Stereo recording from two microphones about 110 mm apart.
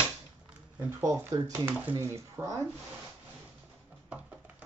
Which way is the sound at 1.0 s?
30° right (ahead or behind).